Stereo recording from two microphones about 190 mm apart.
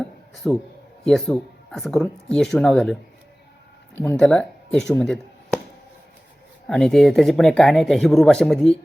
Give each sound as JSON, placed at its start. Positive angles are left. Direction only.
{"t": 0.3, "sound": "a sound", "side_deg": 0}
{"t": 1.0, "sound": "speech", "side_deg": 0}
{"t": 6.7, "sound": "speech", "side_deg": 5}